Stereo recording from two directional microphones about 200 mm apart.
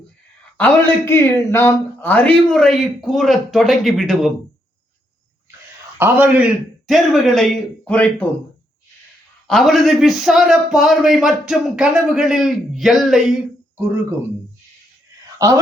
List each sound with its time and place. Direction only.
0.5 s a man's voice: 10° left (ahead or behind)
6.0 s a man's voice: 10° right (ahead or behind); by 8.3 s 5° left (ahead or behind)
9.5 s a man's voice: centre (ahead or behind)
15.4 s speech: 15° right (ahead or behind)